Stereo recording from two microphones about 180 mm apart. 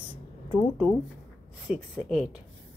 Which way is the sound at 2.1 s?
Centre (ahead or behind).